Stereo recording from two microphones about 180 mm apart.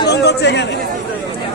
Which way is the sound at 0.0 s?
70° left (ahead or behind).